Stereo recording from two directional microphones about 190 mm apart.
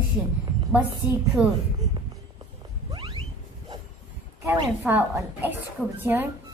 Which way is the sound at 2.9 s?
25° right (ahead or behind).